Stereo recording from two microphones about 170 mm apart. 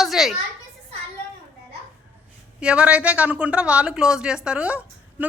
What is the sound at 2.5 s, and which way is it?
A woman's voice, 5° right (ahead or behind).